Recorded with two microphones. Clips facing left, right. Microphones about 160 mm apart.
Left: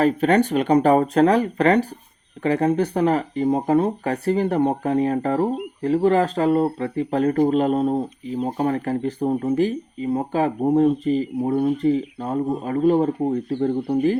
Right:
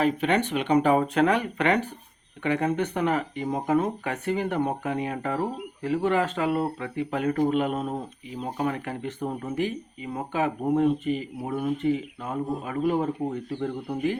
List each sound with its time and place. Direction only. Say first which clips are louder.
0.0 s speech: left 6 dB; 40° left (ahead or behind)